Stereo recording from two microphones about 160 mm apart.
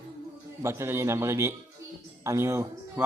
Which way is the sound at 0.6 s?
15° right (ahead or behind).